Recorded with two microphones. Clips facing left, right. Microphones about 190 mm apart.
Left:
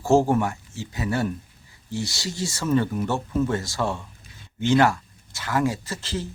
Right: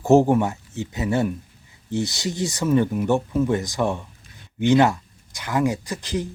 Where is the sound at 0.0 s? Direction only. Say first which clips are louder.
Right 3 dB; 20° right (ahead or behind).